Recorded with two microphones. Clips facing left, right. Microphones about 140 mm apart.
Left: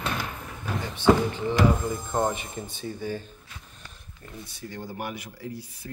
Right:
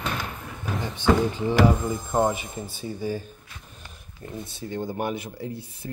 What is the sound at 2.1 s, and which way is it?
Speech, 10° right (ahead or behind).